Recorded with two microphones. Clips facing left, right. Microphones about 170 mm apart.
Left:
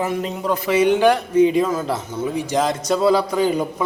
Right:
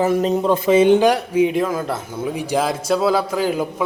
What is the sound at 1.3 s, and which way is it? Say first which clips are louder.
A man's voice: left 2 dB; 5° right (ahead or behind).